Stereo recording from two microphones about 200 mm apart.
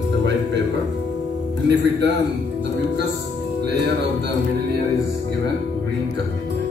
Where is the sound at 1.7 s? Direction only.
60° right (ahead or behind).